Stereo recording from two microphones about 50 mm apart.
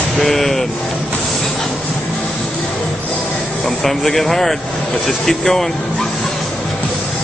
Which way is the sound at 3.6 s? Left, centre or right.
Centre.